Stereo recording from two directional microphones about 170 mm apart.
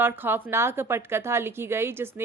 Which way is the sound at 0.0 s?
10° right (ahead or behind).